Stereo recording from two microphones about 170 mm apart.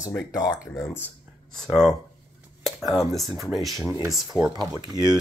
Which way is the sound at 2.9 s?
Centre (ahead or behind).